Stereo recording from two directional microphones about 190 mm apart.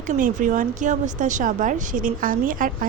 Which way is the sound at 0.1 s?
40° right (ahead or behind).